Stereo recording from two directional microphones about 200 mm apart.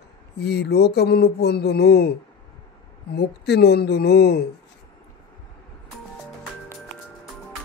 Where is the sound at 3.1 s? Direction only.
55° left (ahead or behind).